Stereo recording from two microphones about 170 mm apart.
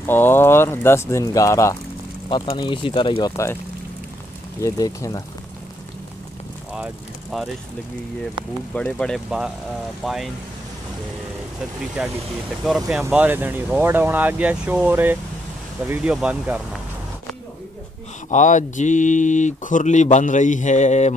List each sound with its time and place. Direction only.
0.0 s speech: 10° left (ahead or behind)
2.2 s speech: 30° left (ahead or behind)
4.6 s speech: 20° left (ahead or behind)
6.7 s vehicle: 5° right (ahead or behind)
8.7 s speech: 5° left (ahead or behind)
12.0 s speech: 5° right (ahead or behind)
18.3 s speech: 45° left (ahead or behind)